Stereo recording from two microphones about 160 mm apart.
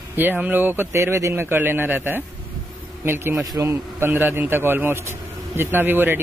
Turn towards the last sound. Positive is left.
turn(degrees=-15)  # may be behind; listen again after turning